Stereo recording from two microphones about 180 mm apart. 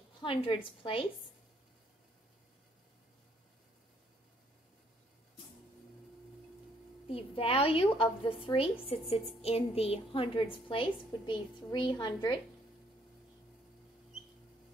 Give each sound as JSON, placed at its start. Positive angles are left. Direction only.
{"t": 0.2, "sound": "a woman's voice", "side_deg": 30}
{"t": 7.1, "sound": "a woman's voice", "side_deg": 30}